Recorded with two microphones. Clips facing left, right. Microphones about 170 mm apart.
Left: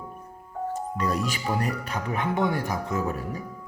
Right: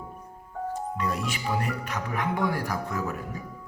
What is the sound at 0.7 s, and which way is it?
Speech, 40° left (ahead or behind).